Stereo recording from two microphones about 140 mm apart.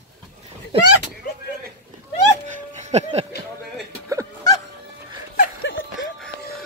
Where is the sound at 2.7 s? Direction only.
55° right (ahead or behind).